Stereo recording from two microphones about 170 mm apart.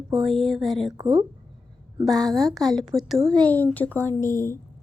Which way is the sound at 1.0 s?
30° right (ahead or behind).